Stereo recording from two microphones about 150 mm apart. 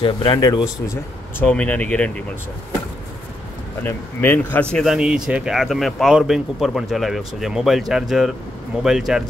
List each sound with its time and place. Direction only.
0.0 s speech: 30° left (ahead or behind)
1.4 s speech: 10° left (ahead or behind)
3.8 s speech: 15° left (ahead or behind); by 9.2 s 5° right (ahead or behind)